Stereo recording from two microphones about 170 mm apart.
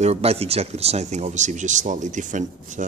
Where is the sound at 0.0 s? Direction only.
40° right (ahead or behind).